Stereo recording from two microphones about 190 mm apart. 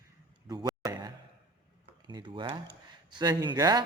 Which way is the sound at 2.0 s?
25° right (ahead or behind).